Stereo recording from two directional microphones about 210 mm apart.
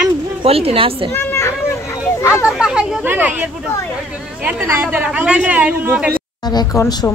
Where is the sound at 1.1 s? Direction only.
10° left (ahead or behind).